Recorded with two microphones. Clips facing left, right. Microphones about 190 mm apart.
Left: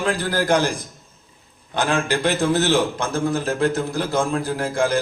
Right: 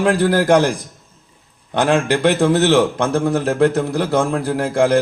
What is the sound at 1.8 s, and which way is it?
A man's voice, 70° right (ahead or behind).